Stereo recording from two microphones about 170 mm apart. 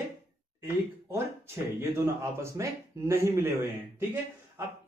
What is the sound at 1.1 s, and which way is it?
Speech, 15° right (ahead or behind).